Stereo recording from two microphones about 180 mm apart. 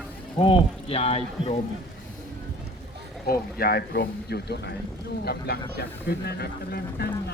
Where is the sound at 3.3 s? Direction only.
55° left (ahead or behind).